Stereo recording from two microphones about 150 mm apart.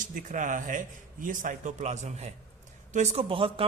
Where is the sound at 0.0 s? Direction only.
60° right (ahead or behind).